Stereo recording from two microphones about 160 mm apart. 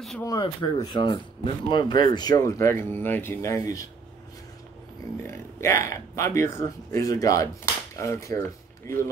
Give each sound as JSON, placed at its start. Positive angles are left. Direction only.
{"t": 0.2, "sound": "speech", "side_deg": 25}
{"t": 5.2, "sound": "speech", "side_deg": 15}